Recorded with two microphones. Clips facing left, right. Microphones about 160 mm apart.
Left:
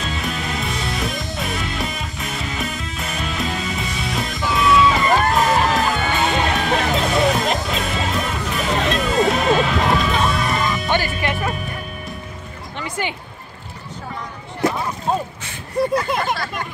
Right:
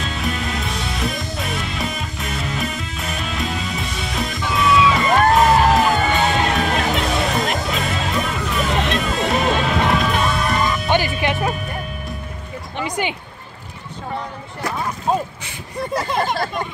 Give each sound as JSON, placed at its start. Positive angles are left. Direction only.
{"t": 0.0, "sound": "music", "side_deg": 0}
{"t": 10.9, "sound": "music", "side_deg": -15}
{"t": 12.7, "sound": "music", "side_deg": -15}